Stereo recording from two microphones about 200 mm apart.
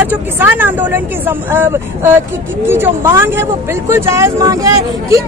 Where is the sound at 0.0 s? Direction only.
10° right (ahead or behind).